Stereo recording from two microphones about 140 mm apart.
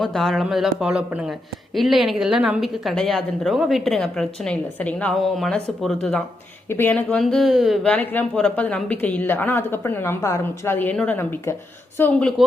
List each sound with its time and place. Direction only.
0.0 s speech: 5° left (ahead or behind)
7.9 s a woman's voice: 10° left (ahead or behind)